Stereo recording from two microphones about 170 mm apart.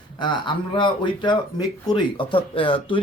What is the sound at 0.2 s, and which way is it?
A man's voice, 30° left (ahead or behind).